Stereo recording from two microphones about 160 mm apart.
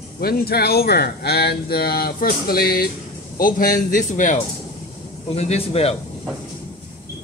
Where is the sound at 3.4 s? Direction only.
60° left (ahead or behind).